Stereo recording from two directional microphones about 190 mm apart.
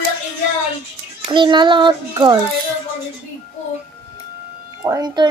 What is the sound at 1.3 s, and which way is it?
Child singing, 25° right (ahead or behind).